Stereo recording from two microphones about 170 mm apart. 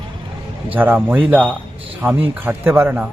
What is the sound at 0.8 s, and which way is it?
Speech, 10° right (ahead or behind).